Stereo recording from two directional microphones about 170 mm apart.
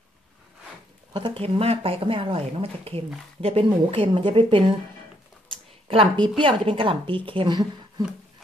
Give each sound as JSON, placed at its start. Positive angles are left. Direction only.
{"t": 1.1, "sound": "speech", "side_deg": -30}
{"t": 5.5, "sound": "a sound", "side_deg": -30}
{"t": 6.4, "sound": "speech", "side_deg": -30}